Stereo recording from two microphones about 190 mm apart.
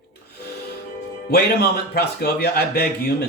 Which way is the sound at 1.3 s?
55° left (ahead or behind).